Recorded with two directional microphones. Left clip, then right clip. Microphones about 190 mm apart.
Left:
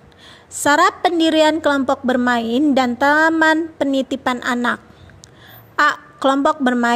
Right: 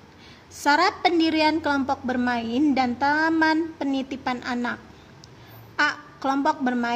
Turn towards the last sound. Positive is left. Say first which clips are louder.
# left 7 dB
turn(degrees=35)  # may be behind; listen again after turning